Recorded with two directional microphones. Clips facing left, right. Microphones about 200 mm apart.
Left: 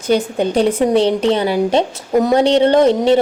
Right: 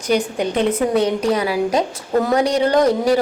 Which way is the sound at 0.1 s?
30° left (ahead or behind).